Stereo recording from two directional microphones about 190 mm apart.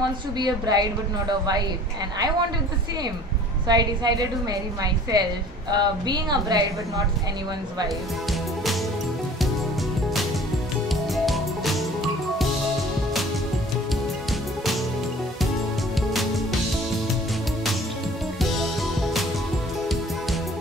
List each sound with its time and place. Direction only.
0.4 s a woman's voice: 20° right (ahead or behind)
3.6 s a woman's voice: 20° right (ahead or behind)
10.9 s music: centre (ahead or behind)